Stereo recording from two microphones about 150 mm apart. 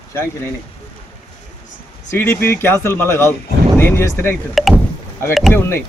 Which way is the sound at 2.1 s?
15° left (ahead or behind).